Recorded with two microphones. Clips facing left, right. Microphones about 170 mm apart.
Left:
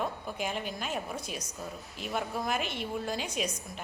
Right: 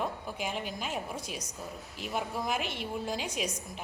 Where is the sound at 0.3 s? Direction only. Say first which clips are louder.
Left 1 dB; 10° right (ahead or behind).